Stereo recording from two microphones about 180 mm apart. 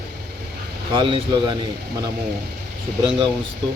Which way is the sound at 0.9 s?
30° right (ahead or behind).